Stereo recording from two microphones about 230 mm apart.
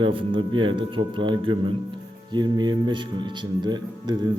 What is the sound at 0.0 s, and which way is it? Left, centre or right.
A man's voice, right.